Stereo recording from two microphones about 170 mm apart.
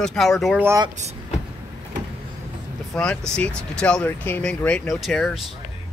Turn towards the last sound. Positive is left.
turn(degrees=0)  # may be behind; listen again after turning